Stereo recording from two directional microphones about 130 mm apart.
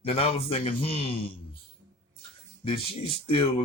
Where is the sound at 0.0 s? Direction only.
50° left (ahead or behind).